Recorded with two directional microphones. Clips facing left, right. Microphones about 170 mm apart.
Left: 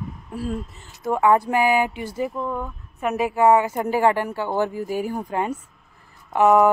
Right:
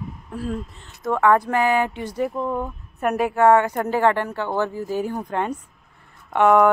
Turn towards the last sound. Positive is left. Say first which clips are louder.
# even
turn(degrees=5)  # may be behind; listen again after turning